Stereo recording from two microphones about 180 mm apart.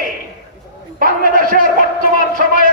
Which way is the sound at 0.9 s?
50° right (ahead or behind).